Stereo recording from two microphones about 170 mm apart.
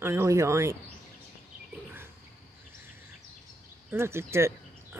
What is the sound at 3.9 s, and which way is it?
Speech, 15° right (ahead or behind).